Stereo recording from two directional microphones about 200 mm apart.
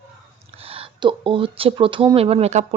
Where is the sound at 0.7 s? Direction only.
25° right (ahead or behind).